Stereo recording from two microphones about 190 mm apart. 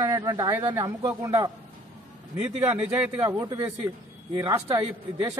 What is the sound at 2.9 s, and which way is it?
Speech, 10° right (ahead or behind).